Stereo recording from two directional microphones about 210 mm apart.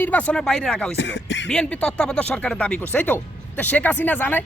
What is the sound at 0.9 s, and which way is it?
Music, 55° left (ahead or behind).